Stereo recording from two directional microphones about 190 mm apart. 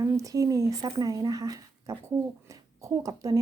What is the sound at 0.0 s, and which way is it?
Speech, 15° right (ahead or behind).